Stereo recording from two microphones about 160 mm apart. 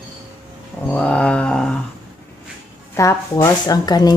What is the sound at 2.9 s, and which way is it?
Speech, 20° left (ahead or behind).